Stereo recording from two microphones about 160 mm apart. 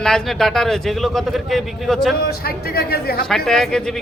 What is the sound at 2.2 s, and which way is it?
Speech, 75° left (ahead or behind).